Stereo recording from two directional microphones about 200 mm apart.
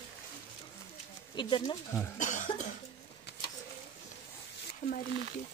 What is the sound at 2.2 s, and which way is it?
Cough, 40° left (ahead or behind).